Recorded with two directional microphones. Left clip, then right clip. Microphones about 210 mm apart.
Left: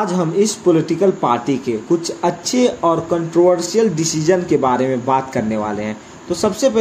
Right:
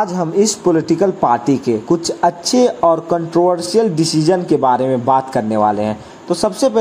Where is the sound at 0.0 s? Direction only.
30° right (ahead or behind).